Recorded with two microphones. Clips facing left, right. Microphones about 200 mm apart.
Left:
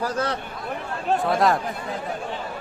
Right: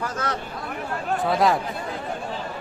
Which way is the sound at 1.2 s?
Centre (ahead or behind).